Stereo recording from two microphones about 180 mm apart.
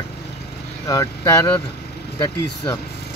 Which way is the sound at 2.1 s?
30° left (ahead or behind).